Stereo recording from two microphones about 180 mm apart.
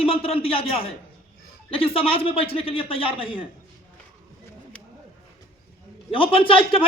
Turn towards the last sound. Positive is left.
turn(degrees=30)  # may be behind; listen again after turning